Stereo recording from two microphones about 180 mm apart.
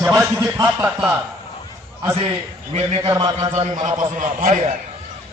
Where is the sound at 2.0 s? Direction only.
25° right (ahead or behind).